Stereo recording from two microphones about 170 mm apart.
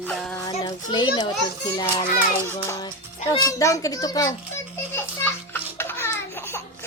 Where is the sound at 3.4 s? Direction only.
20° left (ahead or behind).